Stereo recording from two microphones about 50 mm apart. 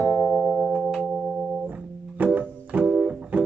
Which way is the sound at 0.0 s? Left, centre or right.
Centre.